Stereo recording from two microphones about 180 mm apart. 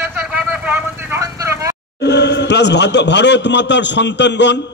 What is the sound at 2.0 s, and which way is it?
A man's voice, 70° left (ahead or behind).